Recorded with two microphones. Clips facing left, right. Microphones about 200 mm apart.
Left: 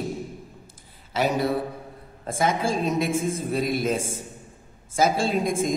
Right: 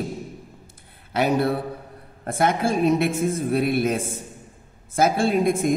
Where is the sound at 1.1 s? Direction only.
60° right (ahead or behind).